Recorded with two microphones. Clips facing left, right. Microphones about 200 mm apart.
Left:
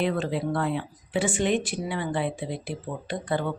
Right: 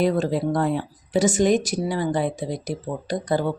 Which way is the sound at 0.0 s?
40° right (ahead or behind).